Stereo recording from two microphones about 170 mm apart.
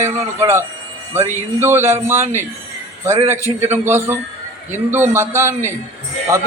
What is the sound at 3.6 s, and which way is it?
A man's voice, 15° right (ahead or behind).